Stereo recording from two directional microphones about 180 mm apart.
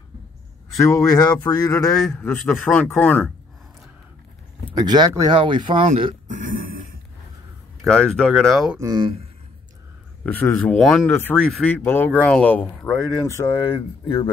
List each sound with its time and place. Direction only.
0.7 s speech: 20° left (ahead or behind)
2.1 s speech: 5° left (ahead or behind)
4.7 s speech: 25° right (ahead or behind)
6.2 s a sound: 45° right (ahead or behind)
7.8 s speech: 5° left (ahead or behind)
8.7 s speech: 20° right (ahead or behind)
10.2 s speech: 10° left (ahead or behind); by 14.3 s 30° left (ahead or behind)